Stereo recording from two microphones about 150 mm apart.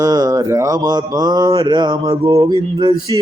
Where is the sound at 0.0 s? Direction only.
25° right (ahead or behind).